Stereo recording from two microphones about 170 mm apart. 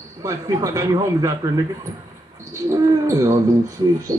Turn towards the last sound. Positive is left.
turn(degrees=-20)  # may be behind; listen again after turning